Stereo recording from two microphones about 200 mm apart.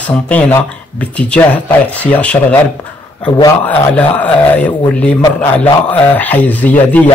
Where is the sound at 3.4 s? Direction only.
10° left (ahead or behind).